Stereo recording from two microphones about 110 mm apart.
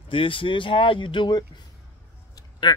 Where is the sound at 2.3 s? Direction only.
40° left (ahead or behind).